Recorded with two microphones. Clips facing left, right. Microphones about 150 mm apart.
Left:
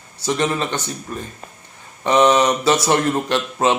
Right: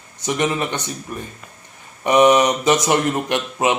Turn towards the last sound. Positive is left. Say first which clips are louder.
# left 1 dB
turn(degrees=-15)  # may be behind; listen again after turning